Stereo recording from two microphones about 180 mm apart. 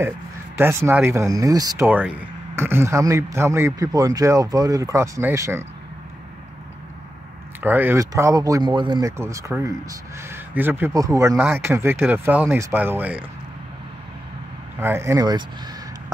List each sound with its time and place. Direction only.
0.6 s speech: 15° right (ahead or behind)
7.6 s speech: 10° right (ahead or behind)
14.8 s speech: 15° right (ahead or behind)